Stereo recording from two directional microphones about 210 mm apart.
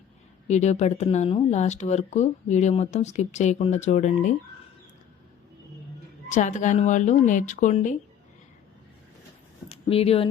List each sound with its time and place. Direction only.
0.4 s speech: 35° left (ahead or behind)
6.2 s speech: 35° left (ahead or behind)
9.6 s a sound: 30° left (ahead or behind)